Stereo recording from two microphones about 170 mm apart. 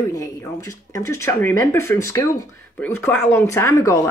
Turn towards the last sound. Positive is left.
turn(degrees=15)  # may be behind; listen again after turning